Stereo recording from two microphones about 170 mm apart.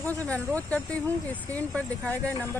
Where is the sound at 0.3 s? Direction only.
10° left (ahead or behind).